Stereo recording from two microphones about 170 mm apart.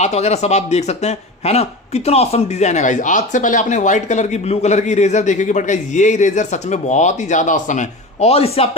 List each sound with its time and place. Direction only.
0.0 s speech: 40° left (ahead or behind)